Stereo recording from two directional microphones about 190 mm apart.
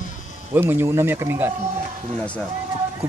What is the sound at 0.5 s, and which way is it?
Speech, 10° right (ahead or behind).